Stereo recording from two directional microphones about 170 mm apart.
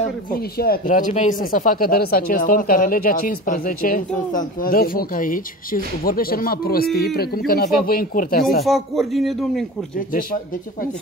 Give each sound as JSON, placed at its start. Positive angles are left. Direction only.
{"t": 0.3, "sound": "speech", "side_deg": 65}
{"t": 8.6, "sound": "speech", "side_deg": 0}
{"t": 9.9, "sound": "speech", "side_deg": 55}